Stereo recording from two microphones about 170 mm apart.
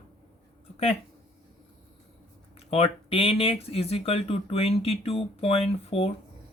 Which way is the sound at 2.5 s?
35° left (ahead or behind).